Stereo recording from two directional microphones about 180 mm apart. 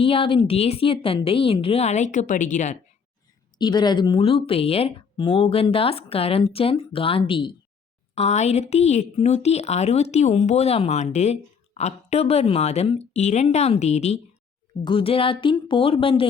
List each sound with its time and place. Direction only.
0.0 s a woman's voice: 30° left (ahead or behind)
3.6 s a woman's voice: 25° left (ahead or behind)